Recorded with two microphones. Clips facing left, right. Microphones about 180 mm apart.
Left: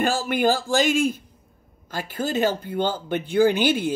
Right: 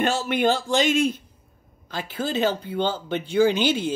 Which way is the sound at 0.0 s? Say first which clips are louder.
Even; centre (ahead or behind).